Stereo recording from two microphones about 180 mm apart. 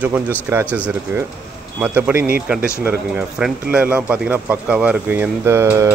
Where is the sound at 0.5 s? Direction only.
10° right (ahead or behind).